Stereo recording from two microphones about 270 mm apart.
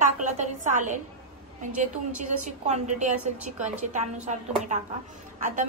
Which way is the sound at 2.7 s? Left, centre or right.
Right.